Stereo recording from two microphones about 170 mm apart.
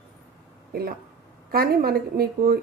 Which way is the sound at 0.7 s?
60° right (ahead or behind).